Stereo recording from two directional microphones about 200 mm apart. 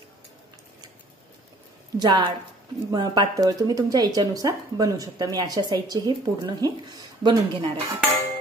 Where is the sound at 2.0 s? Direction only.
20° right (ahead or behind).